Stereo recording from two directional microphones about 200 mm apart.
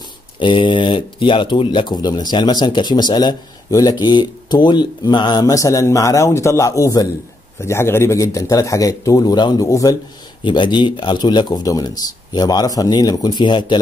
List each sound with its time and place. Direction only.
0.4 s speech: 25° left (ahead or behind)